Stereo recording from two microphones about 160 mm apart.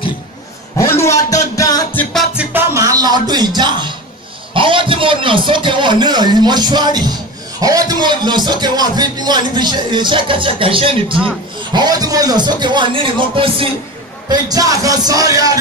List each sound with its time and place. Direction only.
0.7 s a sound: 15° left (ahead or behind)
1.6 s music: 25° left (ahead or behind)
2.3 s music: 15° right (ahead or behind)
4.6 s a man's voice: 30° right (ahead or behind)
14.3 s a man's voice: 25° right (ahead or behind)